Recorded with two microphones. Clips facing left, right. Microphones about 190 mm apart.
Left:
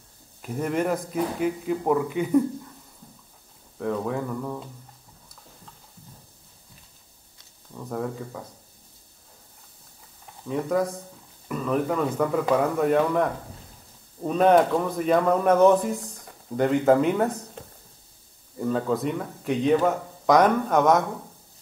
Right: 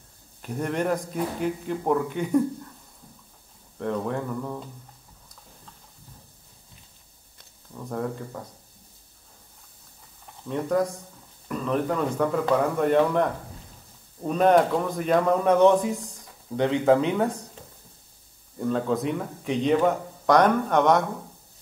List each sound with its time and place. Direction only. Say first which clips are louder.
0.4 s speech: left 1 dB; 5° left (ahead or behind)
3.7 s speech: left 1 dB; centre (ahead or behind)
7.7 s speech: even; centre (ahead or behind)
10.5 s speech: even; 5° left (ahead or behind)
17.6 s a sound: left 4 dB; 65° left (ahead or behind)
18.6 s speech: even; centre (ahead or behind)